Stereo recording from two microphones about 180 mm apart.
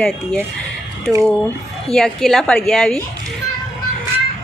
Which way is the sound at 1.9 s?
Centre (ahead or behind).